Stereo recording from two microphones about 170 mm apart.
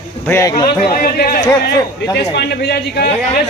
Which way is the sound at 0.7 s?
60° left (ahead or behind).